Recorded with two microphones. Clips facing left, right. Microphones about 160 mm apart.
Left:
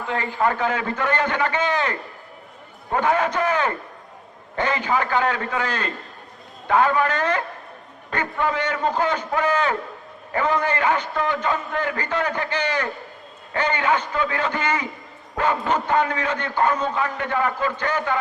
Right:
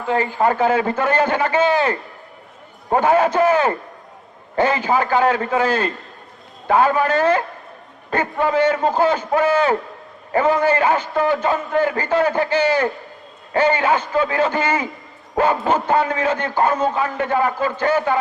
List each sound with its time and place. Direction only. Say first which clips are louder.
0.1 s a man's voice: right 5 dB; 30° right (ahead or behind)
16.0 s a man's voice: right 5 dB; 25° right (ahead or behind)
16.3 s a man's voice: right 3 dB; 40° right (ahead or behind)